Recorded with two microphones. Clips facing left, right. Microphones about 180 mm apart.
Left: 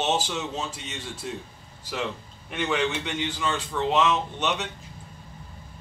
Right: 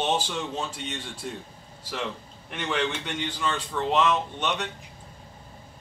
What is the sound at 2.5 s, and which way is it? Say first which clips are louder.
A man's voice: left 2 dB; 5° left (ahead or behind).